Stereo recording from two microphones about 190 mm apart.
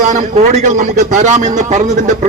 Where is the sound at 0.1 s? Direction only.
40° right (ahead or behind).